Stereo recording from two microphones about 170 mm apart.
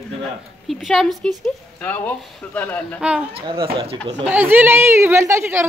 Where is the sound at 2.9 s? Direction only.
5° right (ahead or behind).